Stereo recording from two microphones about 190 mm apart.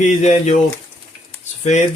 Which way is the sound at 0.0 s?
40° left (ahead or behind).